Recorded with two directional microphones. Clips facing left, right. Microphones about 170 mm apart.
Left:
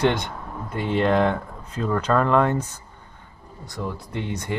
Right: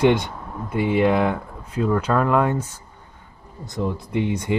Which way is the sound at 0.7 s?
10° right (ahead or behind).